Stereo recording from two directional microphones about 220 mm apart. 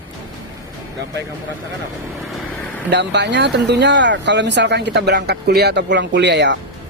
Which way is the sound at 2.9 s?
50° right (ahead or behind).